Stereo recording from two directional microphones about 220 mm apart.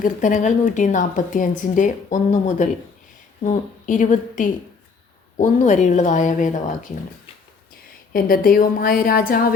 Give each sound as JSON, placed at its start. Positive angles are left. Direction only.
{"t": 0.0, "sound": "a woman's voice", "side_deg": 35}
{"t": 8.1, "sound": "a woman's voice", "side_deg": 40}